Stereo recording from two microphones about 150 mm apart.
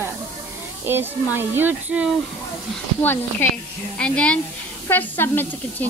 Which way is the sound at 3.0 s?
15° left (ahead or behind).